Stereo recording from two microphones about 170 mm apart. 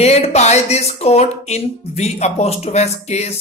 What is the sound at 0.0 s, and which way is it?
A woman's voice, 40° left (ahead or behind).